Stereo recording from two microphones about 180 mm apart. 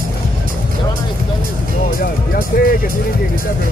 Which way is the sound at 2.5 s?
55° left (ahead or behind).